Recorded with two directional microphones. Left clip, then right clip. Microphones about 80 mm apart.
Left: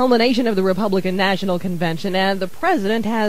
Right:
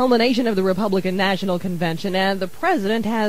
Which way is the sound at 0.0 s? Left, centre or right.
Left.